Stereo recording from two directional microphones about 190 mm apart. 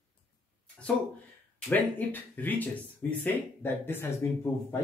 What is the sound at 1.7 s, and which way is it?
Speech, 10° left (ahead or behind).